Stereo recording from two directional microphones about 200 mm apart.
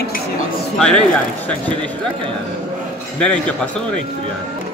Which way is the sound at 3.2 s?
5° left (ahead or behind).